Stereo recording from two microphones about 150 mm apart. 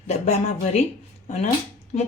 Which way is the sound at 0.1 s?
50° left (ahead or behind).